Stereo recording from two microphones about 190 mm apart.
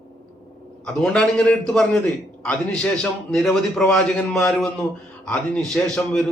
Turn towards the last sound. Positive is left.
turn(degrees=5)  # may be behind; listen again after turning